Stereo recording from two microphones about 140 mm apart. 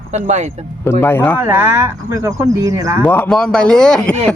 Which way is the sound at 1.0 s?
10° left (ahead or behind).